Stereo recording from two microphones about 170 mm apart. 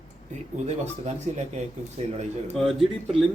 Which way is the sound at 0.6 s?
40° right (ahead or behind).